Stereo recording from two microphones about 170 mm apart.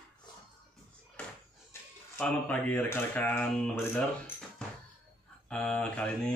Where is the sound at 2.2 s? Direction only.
10° left (ahead or behind).